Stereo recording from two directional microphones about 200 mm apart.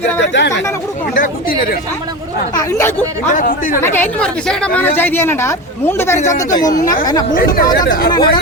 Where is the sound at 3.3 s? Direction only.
45° left (ahead or behind).